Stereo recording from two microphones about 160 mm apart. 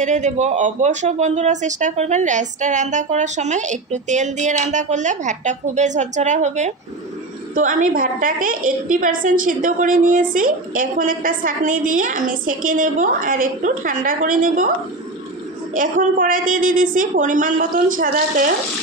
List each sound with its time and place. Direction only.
0.0 s a woman's voice: 50° right (ahead or behind)
15.7 s a woman's voice: 55° right (ahead or behind)